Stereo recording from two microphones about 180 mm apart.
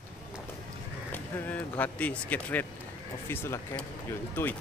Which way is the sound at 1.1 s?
10° left (ahead or behind).